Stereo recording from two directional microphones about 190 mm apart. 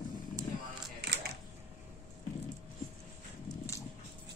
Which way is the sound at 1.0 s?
60° right (ahead or behind).